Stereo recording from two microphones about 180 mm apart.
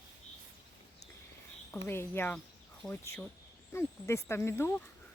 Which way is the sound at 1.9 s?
10° left (ahead or behind).